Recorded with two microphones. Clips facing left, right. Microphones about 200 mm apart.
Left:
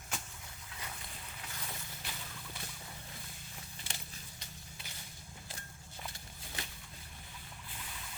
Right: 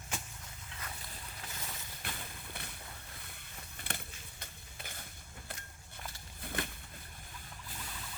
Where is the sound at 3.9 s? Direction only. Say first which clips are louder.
Right 8 dB; 55° right (ahead or behind).